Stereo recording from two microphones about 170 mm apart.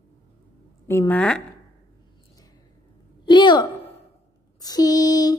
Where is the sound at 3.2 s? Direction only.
25° left (ahead or behind).